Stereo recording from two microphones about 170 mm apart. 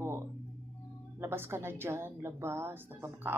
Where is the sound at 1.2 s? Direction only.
15° right (ahead or behind).